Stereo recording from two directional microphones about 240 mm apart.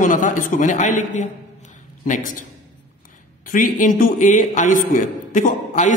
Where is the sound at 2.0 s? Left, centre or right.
Left.